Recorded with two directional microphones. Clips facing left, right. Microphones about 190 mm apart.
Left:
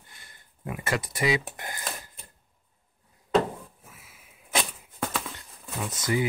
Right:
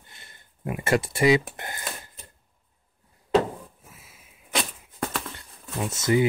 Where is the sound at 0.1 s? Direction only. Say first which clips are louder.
Right 2 dB; 25° right (ahead or behind).